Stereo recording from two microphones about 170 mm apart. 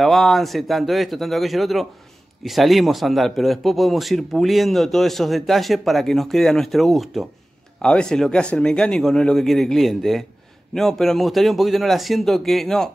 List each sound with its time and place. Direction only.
0.0 s a man's voice: centre (ahead or behind)